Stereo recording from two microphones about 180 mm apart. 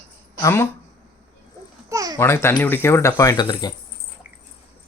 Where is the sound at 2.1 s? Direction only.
15° left (ahead or behind).